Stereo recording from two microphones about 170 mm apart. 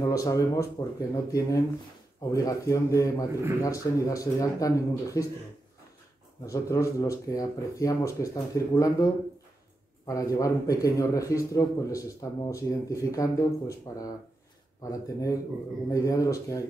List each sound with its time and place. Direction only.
0.0 s speech: 20° left (ahead or behind)
6.4 s speech: 20° left (ahead or behind)